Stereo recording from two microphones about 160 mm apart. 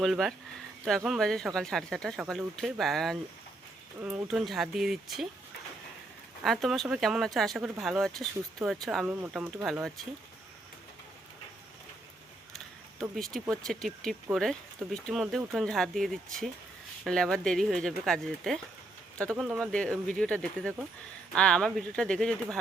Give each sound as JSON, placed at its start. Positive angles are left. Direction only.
{"t": 0.0, "sound": "speech", "side_deg": 0}
{"t": 6.4, "sound": "speech", "side_deg": 0}
{"t": 13.1, "sound": "speech", "side_deg": 0}
{"t": 13.4, "sound": "speech", "side_deg": -20}
{"t": 13.7, "sound": "speech", "side_deg": 0}